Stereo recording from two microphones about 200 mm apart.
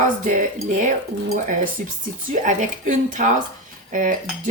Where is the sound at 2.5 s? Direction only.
40° right (ahead or behind).